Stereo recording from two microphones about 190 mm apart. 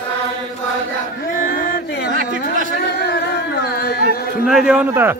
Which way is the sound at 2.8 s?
60° left (ahead or behind).